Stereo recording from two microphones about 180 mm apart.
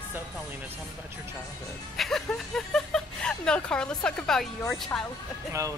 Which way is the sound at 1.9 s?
Centre (ahead or behind).